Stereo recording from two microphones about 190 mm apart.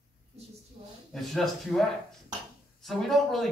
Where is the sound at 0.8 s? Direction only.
45° right (ahead or behind).